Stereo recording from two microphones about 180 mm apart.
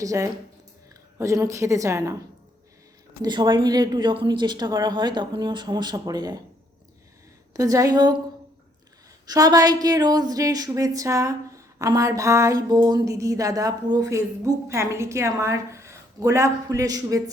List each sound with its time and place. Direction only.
0.0 s a woman's voice: 15° right (ahead or behind)
3.2 s a woman's voice: 25° right (ahead or behind)
7.5 s a woman's voice: 20° right (ahead or behind)
9.2 s a woman's voice: 20° right (ahead or behind)